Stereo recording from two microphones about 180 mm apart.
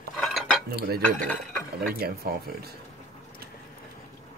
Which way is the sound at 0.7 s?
60° right (ahead or behind).